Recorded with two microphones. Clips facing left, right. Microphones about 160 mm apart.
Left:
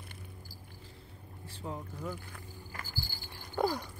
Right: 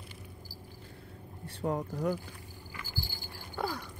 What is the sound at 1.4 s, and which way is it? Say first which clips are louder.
Speech: right 8 dB; 65° right (ahead or behind).